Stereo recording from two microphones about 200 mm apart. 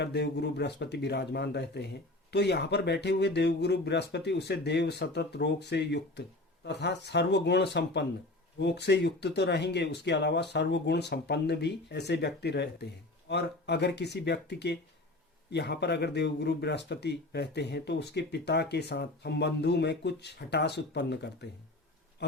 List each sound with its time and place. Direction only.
0.0 s speech: 55° left (ahead or behind)